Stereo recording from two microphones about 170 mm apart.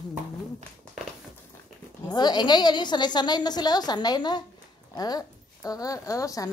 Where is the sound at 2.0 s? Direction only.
25° left (ahead or behind).